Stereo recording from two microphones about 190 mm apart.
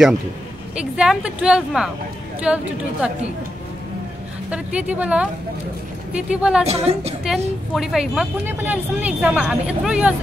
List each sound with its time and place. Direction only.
0.7 s speech: 5° right (ahead or behind)
4.5 s a woman's voice: 5° right (ahead or behind)
6.6 s a woman's voice: 35° right (ahead or behind)
7.7 s speech: centre (ahead or behind)